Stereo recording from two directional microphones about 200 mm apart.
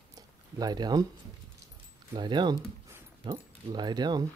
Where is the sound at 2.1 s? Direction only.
20° right (ahead or behind).